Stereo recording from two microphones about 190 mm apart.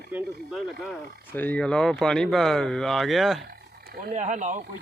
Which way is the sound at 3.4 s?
55° right (ahead or behind).